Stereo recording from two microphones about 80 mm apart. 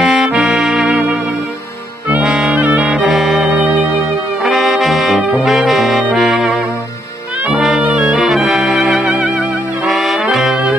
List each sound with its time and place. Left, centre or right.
0.0 s music: centre
2.2 s saxophone: centre
3.5 s music: centre
4.4 s brass instrument: centre
5.4 s saxophone: centre
6.1 s music: centre
7.5 s brass instrument: centre
8.5 s saxophone: centre
9.8 s brass instrument: centre
10.3 s saxophone: centre